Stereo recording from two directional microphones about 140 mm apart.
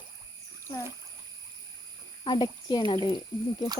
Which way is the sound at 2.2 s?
30° left (ahead or behind).